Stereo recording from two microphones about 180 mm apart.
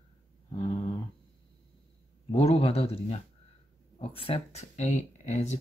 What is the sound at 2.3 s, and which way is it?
Speech, 35° left (ahead or behind).